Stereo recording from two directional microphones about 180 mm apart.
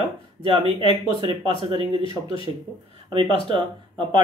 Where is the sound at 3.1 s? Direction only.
30° right (ahead or behind).